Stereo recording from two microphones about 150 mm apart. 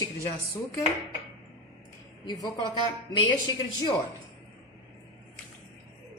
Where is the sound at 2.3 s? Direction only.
30° left (ahead or behind).